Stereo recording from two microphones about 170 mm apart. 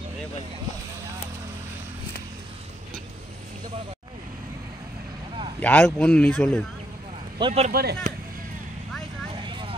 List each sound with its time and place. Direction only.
5.6 s speech: 10° left (ahead or behind)
7.3 s speech: 30° right (ahead or behind)
7.7 s speech: 70° right (ahead or behind)
9.5 s vehicle: 30° right (ahead or behind)